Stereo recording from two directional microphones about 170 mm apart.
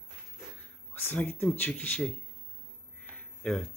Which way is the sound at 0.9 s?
10° left (ahead or behind).